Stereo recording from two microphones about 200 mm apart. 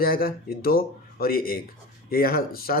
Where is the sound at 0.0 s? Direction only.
50° left (ahead or behind).